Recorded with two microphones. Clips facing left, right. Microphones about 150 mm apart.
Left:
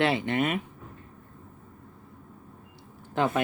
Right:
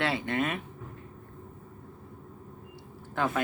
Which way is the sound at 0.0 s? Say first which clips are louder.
Left 4 dB; 25° left (ahead or behind).